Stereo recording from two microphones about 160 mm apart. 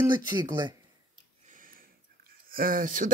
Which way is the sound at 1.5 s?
60° right (ahead or behind).